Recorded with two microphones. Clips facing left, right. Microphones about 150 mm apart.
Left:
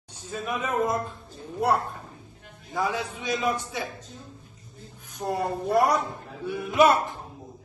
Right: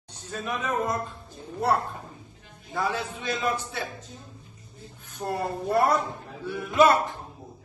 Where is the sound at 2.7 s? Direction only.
10° left (ahead or behind).